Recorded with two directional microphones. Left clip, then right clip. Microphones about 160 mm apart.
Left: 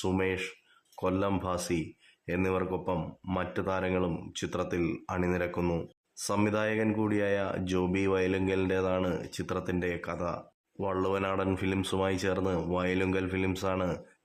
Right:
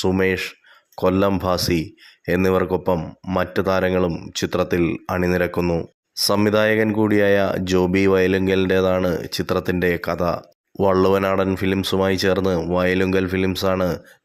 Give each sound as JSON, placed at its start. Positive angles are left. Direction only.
{"t": 0.0, "sound": "speech", "side_deg": -35}